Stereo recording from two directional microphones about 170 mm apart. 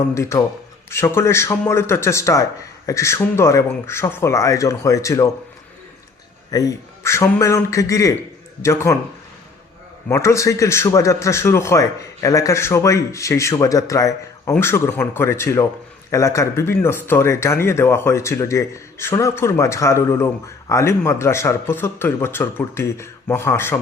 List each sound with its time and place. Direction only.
0.0 s speech: 15° left (ahead or behind)
6.5 s a man's voice: 20° left (ahead or behind)
10.1 s speech: 15° left (ahead or behind)